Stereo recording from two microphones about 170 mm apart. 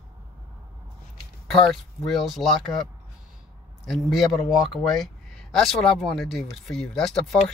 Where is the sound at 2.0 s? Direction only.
Centre (ahead or behind).